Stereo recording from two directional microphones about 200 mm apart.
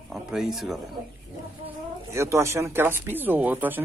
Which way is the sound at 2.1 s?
15° right (ahead or behind).